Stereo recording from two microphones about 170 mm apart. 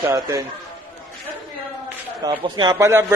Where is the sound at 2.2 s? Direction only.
25° right (ahead or behind).